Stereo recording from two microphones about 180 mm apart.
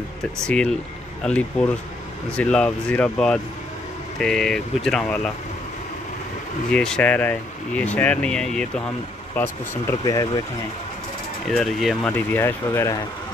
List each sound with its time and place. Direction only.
0.4 s speech: 5° left (ahead or behind)
6.7 s speech: 5° left (ahead or behind)
9.4 s speech: 15° left (ahead or behind)
11.4 s speech: centre (ahead or behind)
12.1 s speech: 10° left (ahead or behind)